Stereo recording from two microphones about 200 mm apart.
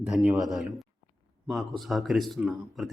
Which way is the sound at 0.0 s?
5° right (ahead or behind).